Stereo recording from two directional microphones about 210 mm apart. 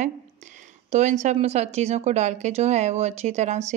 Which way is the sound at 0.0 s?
35° right (ahead or behind).